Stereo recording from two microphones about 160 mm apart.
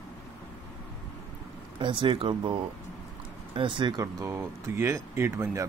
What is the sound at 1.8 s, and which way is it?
Speech, 30° right (ahead or behind).